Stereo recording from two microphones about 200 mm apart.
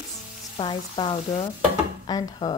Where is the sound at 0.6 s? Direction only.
25° left (ahead or behind).